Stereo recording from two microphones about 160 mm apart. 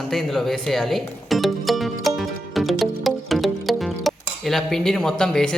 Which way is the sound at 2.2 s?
Centre (ahead or behind).